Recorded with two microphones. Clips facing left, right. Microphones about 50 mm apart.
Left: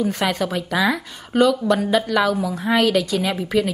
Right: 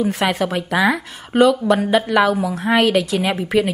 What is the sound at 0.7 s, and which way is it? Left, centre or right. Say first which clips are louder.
Speech: right 3 dB; right.